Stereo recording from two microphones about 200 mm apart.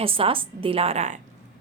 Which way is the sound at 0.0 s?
25° right (ahead or behind).